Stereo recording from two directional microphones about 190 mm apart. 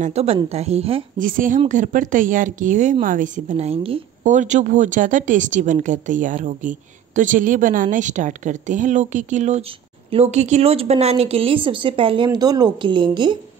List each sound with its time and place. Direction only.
0.0 s speech: 35° right (ahead or behind)
1.1 s speech: 45° right (ahead or behind); by 13.4 s 25° right (ahead or behind)